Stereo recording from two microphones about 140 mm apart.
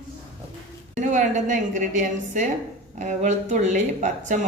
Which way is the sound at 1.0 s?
60° right (ahead or behind).